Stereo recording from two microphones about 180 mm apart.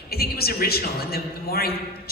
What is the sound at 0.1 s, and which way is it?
A man's voice, 60° left (ahead or behind).